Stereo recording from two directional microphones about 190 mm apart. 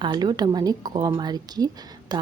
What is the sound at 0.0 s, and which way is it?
A woman's voice, 25° right (ahead or behind).